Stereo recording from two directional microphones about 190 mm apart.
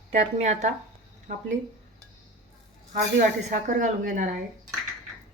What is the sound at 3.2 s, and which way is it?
A woman's voice, 40° right (ahead or behind).